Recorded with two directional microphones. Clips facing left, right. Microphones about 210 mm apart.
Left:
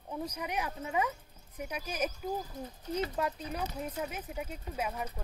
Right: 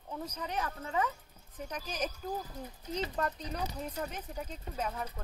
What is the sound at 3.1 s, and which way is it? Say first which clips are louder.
Speech: left 1 dB; 5° left (ahead or behind).